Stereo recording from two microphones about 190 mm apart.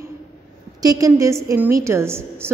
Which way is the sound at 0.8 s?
20° right (ahead or behind).